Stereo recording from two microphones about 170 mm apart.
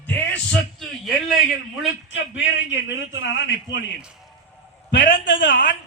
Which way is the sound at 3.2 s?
90° left.